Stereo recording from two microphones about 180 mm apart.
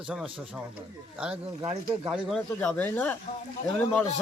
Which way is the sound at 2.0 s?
Centre (ahead or behind).